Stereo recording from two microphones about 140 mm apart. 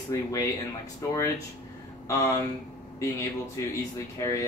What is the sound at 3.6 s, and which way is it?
Speech, 25° left (ahead or behind).